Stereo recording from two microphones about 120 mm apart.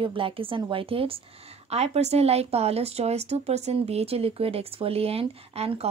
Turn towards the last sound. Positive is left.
turn(degrees=-55)  # may be behind; listen again after turning